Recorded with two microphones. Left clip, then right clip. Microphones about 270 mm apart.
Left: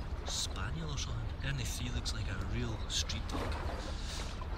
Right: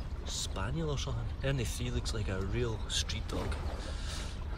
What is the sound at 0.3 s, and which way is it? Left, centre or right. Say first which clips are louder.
Speech: right 1 dB; centre.